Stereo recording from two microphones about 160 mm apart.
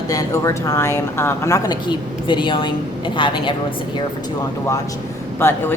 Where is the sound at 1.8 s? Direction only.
30° left (ahead or behind).